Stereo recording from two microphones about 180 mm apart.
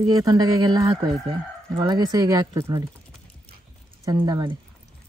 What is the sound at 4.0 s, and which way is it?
Speech, 20° right (ahead or behind).